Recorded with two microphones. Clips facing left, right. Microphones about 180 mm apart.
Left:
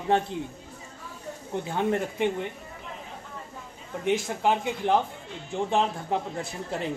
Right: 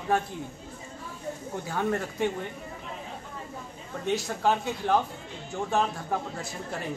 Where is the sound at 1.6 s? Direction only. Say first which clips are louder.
Left 3 dB; 20° left (ahead or behind).